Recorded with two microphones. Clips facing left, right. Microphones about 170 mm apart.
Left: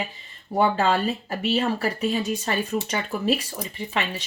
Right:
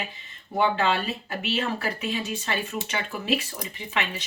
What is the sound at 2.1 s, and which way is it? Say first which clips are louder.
Speech: left 4 dB; 40° left (ahead or behind).